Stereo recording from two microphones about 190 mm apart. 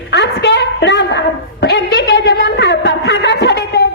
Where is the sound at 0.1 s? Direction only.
65° left (ahead or behind).